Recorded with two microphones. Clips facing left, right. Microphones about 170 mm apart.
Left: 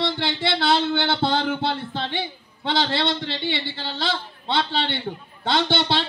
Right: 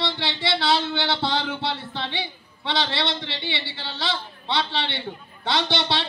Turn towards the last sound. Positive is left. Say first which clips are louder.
# left 3 dB
turn(degrees=50)  # may be behind; listen again after turning